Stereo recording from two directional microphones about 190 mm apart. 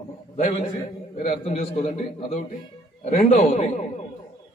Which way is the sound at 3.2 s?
50° left (ahead or behind).